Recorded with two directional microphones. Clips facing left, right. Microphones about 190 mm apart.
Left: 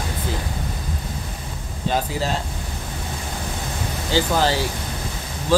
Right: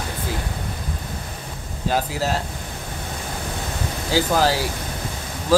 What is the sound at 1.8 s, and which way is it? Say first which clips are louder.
Speech: even; 5° right (ahead or behind).